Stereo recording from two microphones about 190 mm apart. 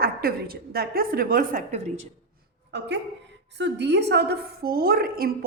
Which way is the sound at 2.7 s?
65° right (ahead or behind).